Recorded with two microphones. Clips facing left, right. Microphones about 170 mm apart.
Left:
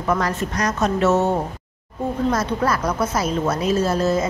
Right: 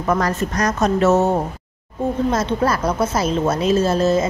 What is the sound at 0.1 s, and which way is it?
A woman's voice, 45° right (ahead or behind).